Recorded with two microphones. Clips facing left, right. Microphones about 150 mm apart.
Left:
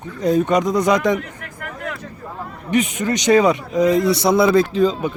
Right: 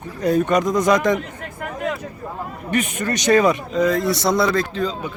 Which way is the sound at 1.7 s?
15° right (ahead or behind).